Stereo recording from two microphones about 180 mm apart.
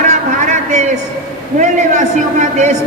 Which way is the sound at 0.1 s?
40° right (ahead or behind).